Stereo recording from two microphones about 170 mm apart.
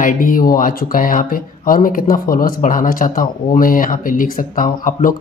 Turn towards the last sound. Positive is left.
turn(degrees=55)  # may be behind; listen again after turning